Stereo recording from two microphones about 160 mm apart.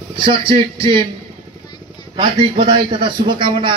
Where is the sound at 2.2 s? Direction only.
30° right (ahead or behind).